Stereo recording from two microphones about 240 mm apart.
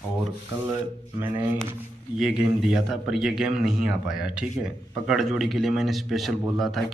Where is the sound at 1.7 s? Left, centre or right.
Centre.